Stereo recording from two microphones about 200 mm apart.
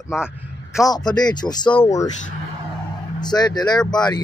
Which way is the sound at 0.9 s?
20° left (ahead or behind).